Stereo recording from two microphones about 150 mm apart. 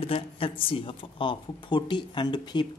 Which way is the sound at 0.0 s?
40° left (ahead or behind).